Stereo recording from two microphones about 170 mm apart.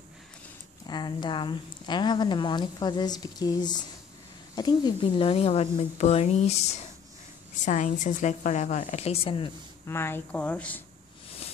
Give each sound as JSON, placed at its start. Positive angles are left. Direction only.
{"t": 0.8, "sound": "a woman's voice", "side_deg": 25}
{"t": 9.8, "sound": "speech", "side_deg": 15}